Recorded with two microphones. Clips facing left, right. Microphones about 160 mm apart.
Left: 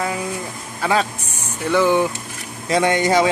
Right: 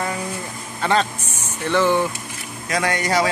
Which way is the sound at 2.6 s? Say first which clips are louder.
Left 5 dB; 25° left (ahead or behind).